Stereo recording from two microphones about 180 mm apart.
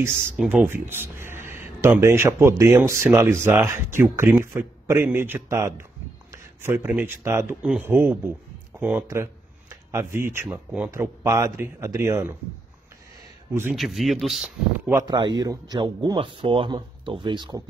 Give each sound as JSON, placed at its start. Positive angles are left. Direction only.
{"t": 0.4, "sound": "speech", "side_deg": -5}
{"t": 9.0, "sound": "a sound", "side_deg": -15}
{"t": 10.4, "sound": "speech", "side_deg": -5}
{"t": 13.5, "sound": "a man's voice", "side_deg": -15}
{"t": 13.7, "sound": "speech", "side_deg": 0}
{"t": 14.9, "sound": "a man's voice", "side_deg": -20}